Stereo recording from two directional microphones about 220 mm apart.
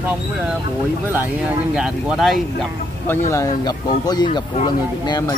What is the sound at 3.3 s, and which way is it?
Speech, 15° left (ahead or behind).